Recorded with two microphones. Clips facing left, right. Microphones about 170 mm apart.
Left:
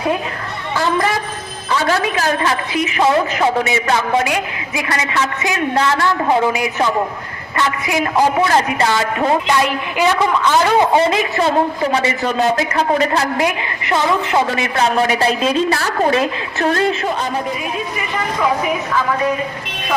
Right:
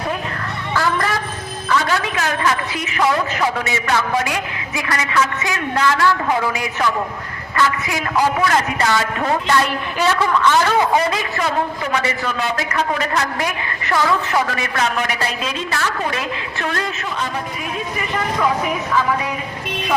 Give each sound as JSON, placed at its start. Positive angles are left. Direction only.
{"t": 1.7, "sound": "a woman's voice", "side_deg": 35}
{"t": 13.9, "sound": "a woman's voice", "side_deg": 20}